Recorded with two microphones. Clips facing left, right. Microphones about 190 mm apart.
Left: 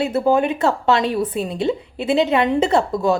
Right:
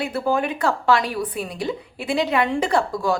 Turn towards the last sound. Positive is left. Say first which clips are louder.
# left 4 dB
turn(degrees=25)  # may be behind; listen again after turning